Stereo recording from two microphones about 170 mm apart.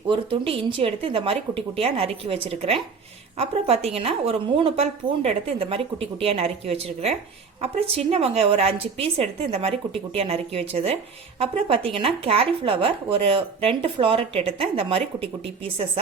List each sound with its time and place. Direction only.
0.1 s speech: 30° right (ahead or behind)